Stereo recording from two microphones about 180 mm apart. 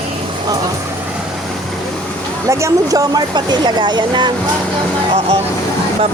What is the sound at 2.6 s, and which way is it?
Speech, 20° right (ahead or behind).